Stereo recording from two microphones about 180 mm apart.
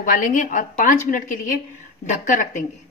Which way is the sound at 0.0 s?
50° left (ahead or behind).